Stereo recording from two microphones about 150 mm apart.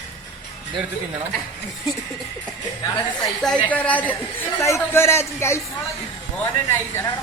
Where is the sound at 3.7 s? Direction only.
10° left (ahead or behind).